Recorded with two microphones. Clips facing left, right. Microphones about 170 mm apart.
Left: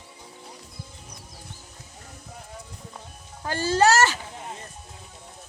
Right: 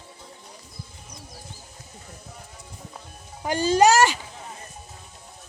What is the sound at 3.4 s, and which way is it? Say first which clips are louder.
Speech: right 3 dB; 15° right (ahead or behind).